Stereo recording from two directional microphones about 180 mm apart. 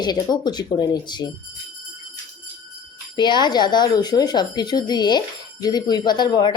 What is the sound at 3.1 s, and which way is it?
Speech, 25° left (ahead or behind).